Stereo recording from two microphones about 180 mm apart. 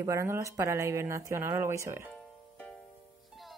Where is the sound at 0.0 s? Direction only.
15° right (ahead or behind).